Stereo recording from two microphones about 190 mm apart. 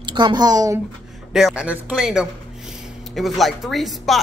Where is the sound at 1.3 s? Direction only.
5° right (ahead or behind).